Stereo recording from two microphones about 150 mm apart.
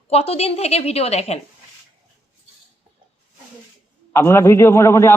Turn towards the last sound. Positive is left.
turn(degrees=15)  # may be behind; listen again after turning